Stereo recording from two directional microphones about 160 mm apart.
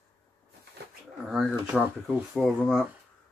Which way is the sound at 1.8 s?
Centre (ahead or behind).